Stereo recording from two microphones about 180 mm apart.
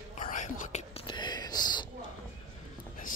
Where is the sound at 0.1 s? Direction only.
45° left (ahead or behind); by 1.9 s 25° left (ahead or behind).